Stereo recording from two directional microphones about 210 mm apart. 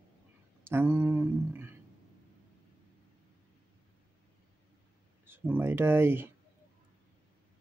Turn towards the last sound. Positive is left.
turn(degrees=-10)  # may be behind; listen again after turning